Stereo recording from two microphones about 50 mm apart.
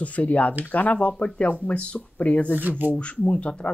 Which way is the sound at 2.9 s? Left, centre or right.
Left.